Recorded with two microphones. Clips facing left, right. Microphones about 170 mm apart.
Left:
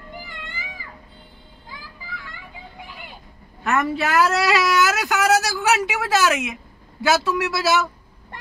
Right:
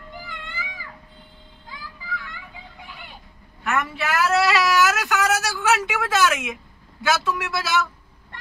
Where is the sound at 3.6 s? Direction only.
35° left (ahead or behind).